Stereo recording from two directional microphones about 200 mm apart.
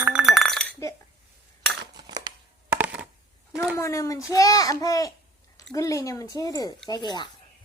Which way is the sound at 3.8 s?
15° left (ahead or behind).